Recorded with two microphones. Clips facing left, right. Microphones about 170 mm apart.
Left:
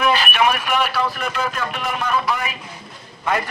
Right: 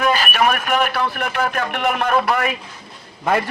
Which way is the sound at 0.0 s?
45° right (ahead or behind).